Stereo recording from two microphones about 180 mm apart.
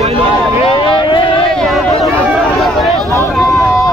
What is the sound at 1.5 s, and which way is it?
Chatter, centre (ahead or behind).